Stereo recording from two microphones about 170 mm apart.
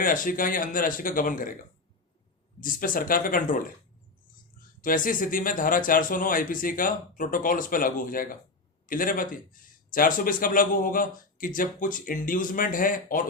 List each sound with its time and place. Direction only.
0.0 s speech: 55° left (ahead or behind)
2.6 s speech: 55° left (ahead or behind)
4.8 s speech: 55° left (ahead or behind)